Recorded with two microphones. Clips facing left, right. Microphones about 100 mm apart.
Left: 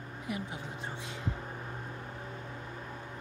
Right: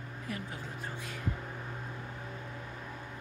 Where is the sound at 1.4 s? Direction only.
10° left (ahead or behind).